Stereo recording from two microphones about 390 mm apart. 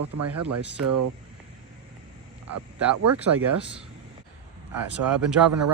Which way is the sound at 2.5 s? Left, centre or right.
Right.